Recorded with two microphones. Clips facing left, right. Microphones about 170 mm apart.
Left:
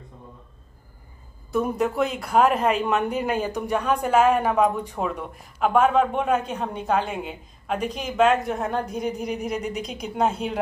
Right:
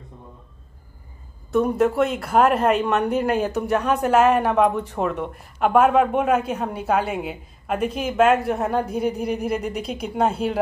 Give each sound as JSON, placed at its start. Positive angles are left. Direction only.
{"t": 1.5, "sound": "speech", "side_deg": 0}